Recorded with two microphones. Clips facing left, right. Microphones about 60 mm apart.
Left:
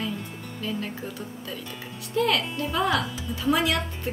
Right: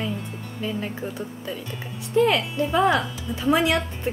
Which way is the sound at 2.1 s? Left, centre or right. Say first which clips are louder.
Right 4 dB; centre.